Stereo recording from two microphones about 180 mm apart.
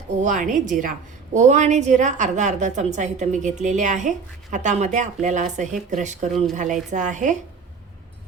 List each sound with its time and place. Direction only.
0.2 s a woman's voice: 45° right (ahead or behind)